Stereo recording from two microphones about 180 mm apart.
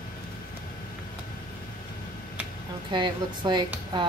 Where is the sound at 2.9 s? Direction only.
25° right (ahead or behind).